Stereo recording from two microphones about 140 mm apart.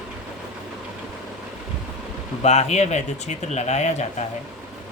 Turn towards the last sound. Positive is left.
turn(degrees=55)  # may be behind; listen again after turning